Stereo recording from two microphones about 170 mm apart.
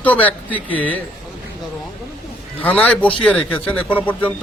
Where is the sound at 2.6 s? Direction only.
10° left (ahead or behind).